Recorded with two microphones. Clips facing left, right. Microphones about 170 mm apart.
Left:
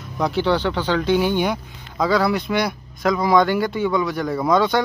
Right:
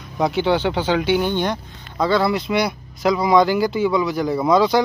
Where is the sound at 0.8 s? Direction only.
10° right (ahead or behind).